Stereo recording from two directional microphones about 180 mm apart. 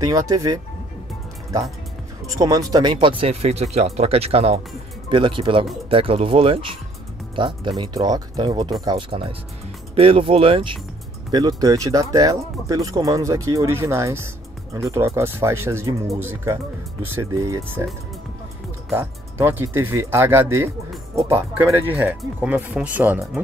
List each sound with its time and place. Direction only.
0.0 s speech: 20° right (ahead or behind)
2.2 s speech: 20° right (ahead or behind)
18.9 s speech: 15° right (ahead or behind)